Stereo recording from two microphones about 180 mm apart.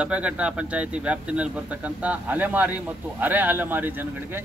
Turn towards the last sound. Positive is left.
turn(degrees=-10)  # may be behind; listen again after turning